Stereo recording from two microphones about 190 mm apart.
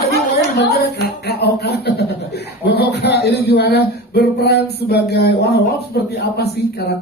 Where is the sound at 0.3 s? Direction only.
65° left (ahead or behind).